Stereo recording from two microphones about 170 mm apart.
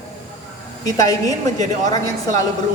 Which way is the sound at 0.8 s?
20° left (ahead or behind).